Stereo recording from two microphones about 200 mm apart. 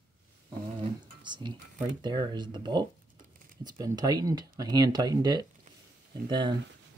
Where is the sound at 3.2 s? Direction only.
45° right (ahead or behind).